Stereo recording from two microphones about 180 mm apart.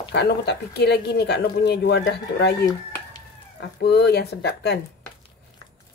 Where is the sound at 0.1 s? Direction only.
70° left (ahead or behind).